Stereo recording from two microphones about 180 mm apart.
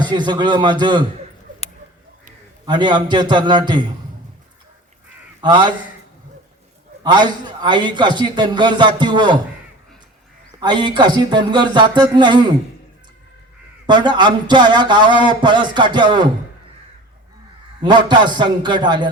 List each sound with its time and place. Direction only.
0.0 s a man's voice: 25° right (ahead or behind)
2.6 s a man's voice: 25° right (ahead or behind)
5.4 s a man's voice: 25° right (ahead or behind)
7.0 s a man's voice: 25° right (ahead or behind)
10.6 s a man's voice: 25° right (ahead or behind)
13.8 s a man's voice: 25° right (ahead or behind)
17.8 s a man's voice: 25° right (ahead or behind)